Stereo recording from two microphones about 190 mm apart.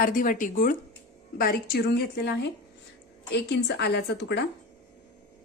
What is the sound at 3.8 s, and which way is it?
Speech, 60° left (ahead or behind).